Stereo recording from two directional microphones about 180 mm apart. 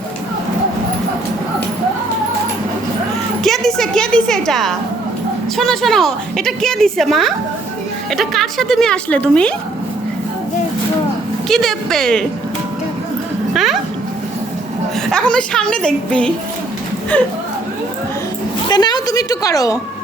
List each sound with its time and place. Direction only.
3.4 s a sound: centre (ahead or behind)
5.5 s a woman's voice: centre (ahead or behind)
11.4 s a woman's voice: centre (ahead or behind)
13.5 s music: centre (ahead or behind)
15.1 s a woman's voice: 5° left (ahead or behind)
18.7 s a woman's voice: 25° left (ahead or behind)